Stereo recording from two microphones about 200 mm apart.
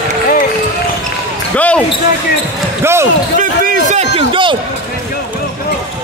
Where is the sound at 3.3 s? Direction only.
40° right (ahead or behind).